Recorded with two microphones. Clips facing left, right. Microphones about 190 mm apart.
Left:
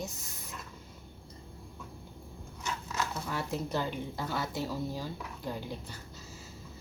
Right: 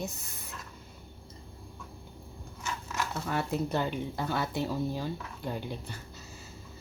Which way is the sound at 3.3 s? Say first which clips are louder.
Right 4 dB; 60° right (ahead or behind).